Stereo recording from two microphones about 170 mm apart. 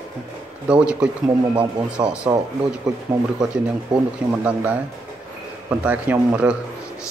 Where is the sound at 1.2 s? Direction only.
25° right (ahead or behind).